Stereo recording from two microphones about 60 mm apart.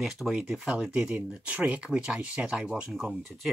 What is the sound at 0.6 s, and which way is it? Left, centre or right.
Speech, centre.